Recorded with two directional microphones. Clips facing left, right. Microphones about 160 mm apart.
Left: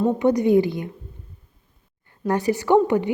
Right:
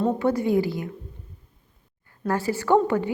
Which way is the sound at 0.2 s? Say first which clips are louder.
Left 5 dB; 15° left (ahead or behind).